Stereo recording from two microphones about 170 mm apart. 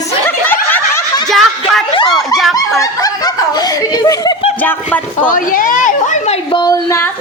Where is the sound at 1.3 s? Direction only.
Centre (ahead or behind).